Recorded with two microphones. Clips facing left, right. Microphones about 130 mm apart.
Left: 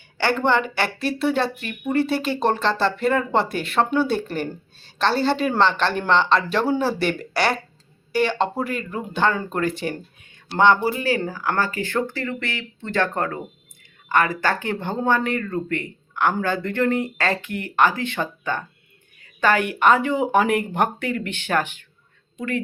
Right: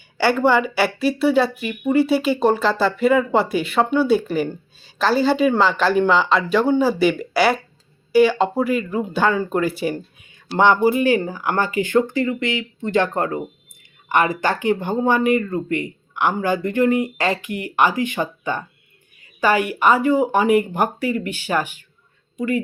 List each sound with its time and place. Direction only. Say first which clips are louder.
0.2 s speech: right 4 dB; 10° right (ahead or behind)